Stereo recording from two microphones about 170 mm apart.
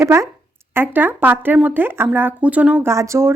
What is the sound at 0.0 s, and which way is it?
Speech, 15° right (ahead or behind).